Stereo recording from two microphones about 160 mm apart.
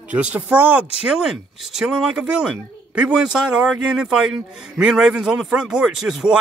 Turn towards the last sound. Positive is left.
turn(degrees=-5)  # may be behind; listen again after turning